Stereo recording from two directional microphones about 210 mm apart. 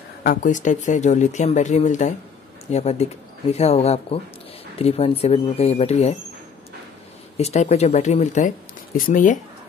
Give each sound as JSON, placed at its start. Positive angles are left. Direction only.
{"t": 0.2, "sound": "speech", "side_deg": 40}
{"t": 7.3, "sound": "speech", "side_deg": 30}